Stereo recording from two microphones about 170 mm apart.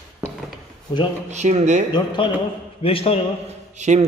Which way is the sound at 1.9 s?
30° left (ahead or behind).